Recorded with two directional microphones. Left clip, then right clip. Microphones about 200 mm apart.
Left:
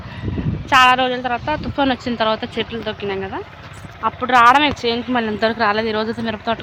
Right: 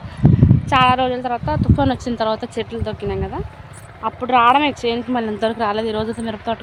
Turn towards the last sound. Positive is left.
turn(degrees=5)  # may be behind; listen again after turning